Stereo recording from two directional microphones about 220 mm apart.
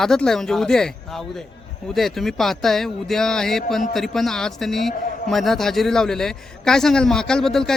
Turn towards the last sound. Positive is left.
turn(degrees=0)  # may be behind; listen again after turning